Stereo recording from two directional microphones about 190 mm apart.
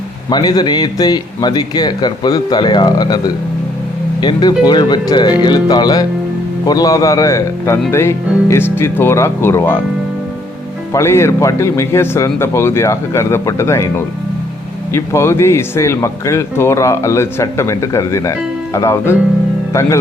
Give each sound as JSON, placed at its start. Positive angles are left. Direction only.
{"t": 0.3, "sound": "a man's voice", "side_deg": 20}
{"t": 10.9, "sound": "speech", "side_deg": 15}